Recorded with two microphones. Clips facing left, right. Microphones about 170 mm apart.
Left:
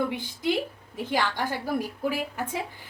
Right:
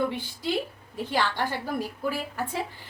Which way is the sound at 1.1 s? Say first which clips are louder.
Even; 15° left (ahead or behind).